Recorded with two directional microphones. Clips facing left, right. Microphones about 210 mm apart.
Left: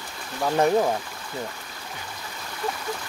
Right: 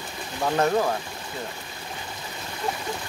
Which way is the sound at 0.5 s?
15° left (ahead or behind).